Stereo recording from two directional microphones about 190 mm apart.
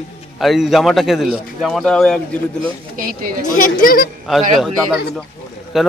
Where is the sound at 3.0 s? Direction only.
50° right (ahead or behind).